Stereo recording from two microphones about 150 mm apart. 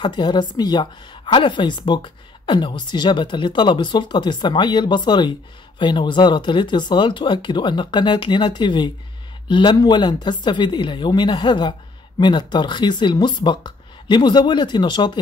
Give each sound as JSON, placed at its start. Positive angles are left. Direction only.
{"t": 0.0, "sound": "speech", "side_deg": 30}